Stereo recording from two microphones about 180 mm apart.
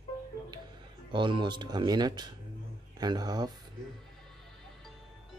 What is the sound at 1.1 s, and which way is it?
Speech, 25° right (ahead or behind).